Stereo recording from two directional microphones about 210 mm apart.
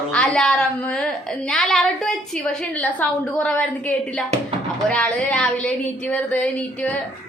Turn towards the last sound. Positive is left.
turn(degrees=5)  # may be behind; listen again after turning